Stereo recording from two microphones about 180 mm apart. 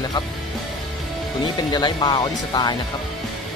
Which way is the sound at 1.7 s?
25° left (ahead or behind).